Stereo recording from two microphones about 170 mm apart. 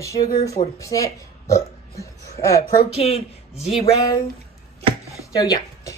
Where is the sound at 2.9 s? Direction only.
35° left (ahead or behind).